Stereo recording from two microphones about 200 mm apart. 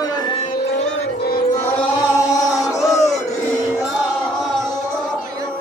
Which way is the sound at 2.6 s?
15° left (ahead or behind).